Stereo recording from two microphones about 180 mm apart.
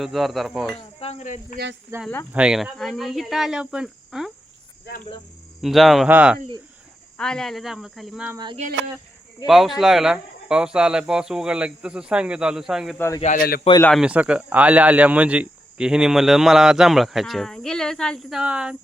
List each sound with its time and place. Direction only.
0.0 s speech: centre (ahead or behind)
0.9 s cricket: 35° left (ahead or behind)
1.9 s speech: 15° right (ahead or behind)
2.3 s speech: 5° right (ahead or behind)
5.6 s speech: centre (ahead or behind)
7.2 s speech: 5° left (ahead or behind)
9.5 s speech: centre (ahead or behind)
13.2 s speech: 50° left (ahead or behind)
14.0 s speech: 5° right (ahead or behind)